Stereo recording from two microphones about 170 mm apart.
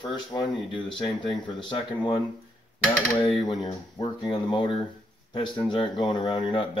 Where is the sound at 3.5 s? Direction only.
25° left (ahead or behind).